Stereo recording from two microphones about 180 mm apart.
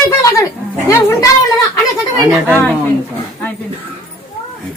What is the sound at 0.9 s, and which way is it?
Speech, 15° left (ahead or behind).